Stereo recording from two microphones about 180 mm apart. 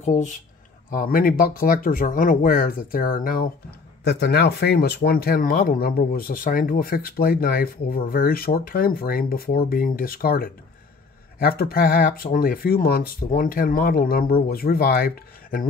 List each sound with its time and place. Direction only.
0.0 s speech: 45° left (ahead or behind)
4.0 s speech: 70° left (ahead or behind)